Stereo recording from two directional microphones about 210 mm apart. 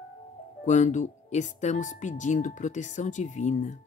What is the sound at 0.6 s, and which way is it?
Speech, 35° left (ahead or behind).